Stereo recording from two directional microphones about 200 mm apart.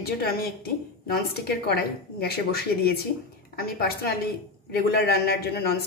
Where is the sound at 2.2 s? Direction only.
50° left (ahead or behind).